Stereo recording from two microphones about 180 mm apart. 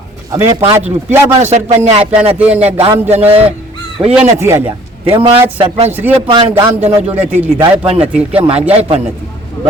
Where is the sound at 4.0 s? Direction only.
5° right (ahead or behind).